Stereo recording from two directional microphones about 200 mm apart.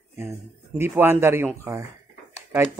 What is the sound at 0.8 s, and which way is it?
Speech, 10° right (ahead or behind).